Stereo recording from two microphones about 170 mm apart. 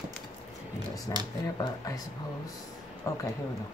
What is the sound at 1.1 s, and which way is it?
Speech, 20° left (ahead or behind).